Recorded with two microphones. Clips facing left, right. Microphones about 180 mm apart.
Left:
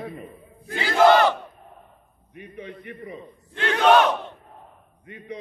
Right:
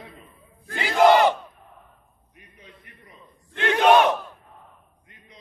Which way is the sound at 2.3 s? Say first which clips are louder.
Left 13 dB; 65° left (ahead or behind).